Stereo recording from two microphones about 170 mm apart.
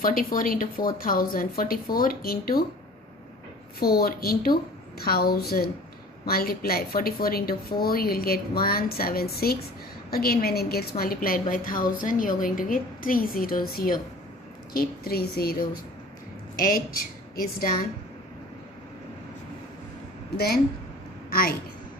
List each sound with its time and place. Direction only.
0.0 s a woman's voice: 55° left (ahead or behind)
3.8 s a woman's voice: 65° left (ahead or behind)
16.6 s a woman's voice: 60° left (ahead or behind)